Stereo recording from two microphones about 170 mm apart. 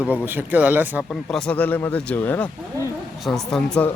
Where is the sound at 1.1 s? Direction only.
5° left (ahead or behind).